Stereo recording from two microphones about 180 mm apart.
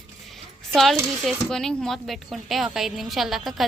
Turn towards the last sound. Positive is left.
turn(degrees=0)  # may be behind; listen again after turning